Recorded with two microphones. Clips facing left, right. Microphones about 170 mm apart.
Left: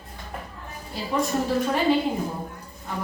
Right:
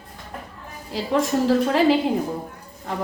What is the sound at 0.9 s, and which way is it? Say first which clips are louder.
A woman's voice: right 4 dB; 90° right.